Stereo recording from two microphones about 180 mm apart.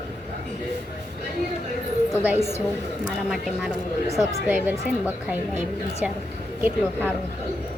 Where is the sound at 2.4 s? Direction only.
35° right (ahead or behind).